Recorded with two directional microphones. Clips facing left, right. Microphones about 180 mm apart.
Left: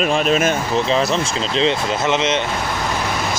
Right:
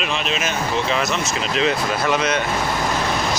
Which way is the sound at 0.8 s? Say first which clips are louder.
Left 4 dB; 30° left (ahead or behind).